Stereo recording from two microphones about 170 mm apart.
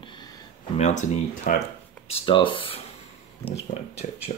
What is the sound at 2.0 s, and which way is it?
Speech, 30° left (ahead or behind).